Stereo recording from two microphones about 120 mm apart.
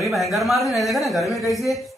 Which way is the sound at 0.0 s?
Centre (ahead or behind).